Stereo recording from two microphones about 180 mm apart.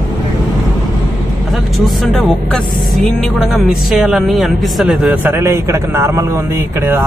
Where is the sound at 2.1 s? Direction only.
Centre (ahead or behind); by 7.1 s 15° right (ahead or behind).